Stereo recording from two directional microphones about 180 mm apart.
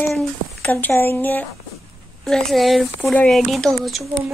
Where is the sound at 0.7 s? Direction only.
10° left (ahead or behind).